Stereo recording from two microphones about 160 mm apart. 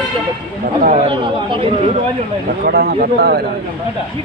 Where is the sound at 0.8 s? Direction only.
45° right (ahead or behind).